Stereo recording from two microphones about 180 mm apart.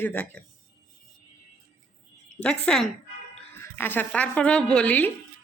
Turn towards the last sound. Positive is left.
turn(degrees=10)  # may be behind; listen again after turning